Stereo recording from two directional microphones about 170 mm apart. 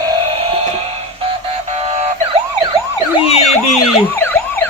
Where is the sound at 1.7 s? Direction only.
40° right (ahead or behind).